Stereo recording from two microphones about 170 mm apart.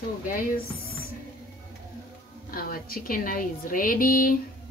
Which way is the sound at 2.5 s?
60° left (ahead or behind).